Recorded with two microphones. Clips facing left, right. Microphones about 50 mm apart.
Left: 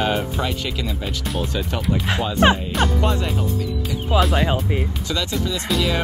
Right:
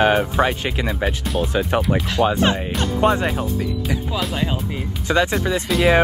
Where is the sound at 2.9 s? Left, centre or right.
Right.